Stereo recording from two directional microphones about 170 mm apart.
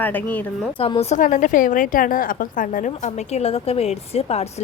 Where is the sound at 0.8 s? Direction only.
35° left (ahead or behind).